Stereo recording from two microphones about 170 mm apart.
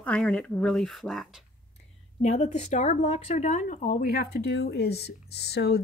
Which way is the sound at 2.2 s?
45° left (ahead or behind).